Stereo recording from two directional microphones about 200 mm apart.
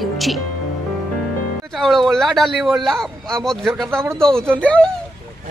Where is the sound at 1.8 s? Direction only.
Centre (ahead or behind).